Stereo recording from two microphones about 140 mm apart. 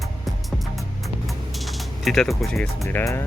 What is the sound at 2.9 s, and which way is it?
Speech, 15° left (ahead or behind).